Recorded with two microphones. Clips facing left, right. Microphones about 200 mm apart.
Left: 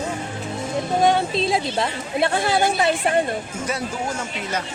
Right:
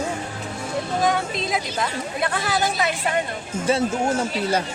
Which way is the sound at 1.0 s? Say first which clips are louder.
Left 5 dB; 30° left (ahead or behind).